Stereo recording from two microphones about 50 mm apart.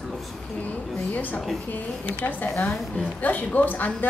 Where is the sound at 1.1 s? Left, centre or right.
Left.